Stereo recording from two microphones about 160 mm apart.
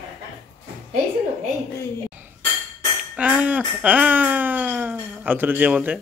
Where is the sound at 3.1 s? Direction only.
5° right (ahead or behind).